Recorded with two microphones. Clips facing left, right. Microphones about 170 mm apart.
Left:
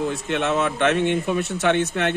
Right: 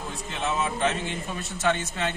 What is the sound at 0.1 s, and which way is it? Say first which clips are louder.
A man's voice: left 7 dB; 75° left (ahead or behind).